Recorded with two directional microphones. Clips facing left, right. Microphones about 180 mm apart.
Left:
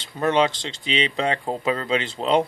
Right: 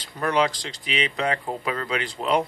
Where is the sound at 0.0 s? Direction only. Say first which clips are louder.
Left 3 dB; 25° left (ahead or behind).